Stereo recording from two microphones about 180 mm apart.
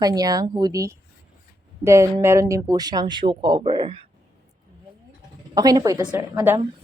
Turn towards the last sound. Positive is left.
turn(degrees=-15)  # may be behind; listen again after turning